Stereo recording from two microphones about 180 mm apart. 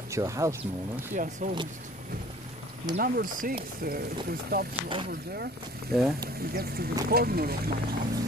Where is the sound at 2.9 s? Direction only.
55° right (ahead or behind).